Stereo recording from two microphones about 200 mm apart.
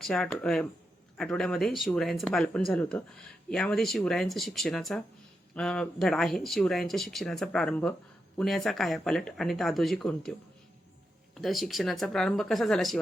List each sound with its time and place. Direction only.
0.0 s speech: 5° left (ahead or behind)
11.3 s speech: centre (ahead or behind)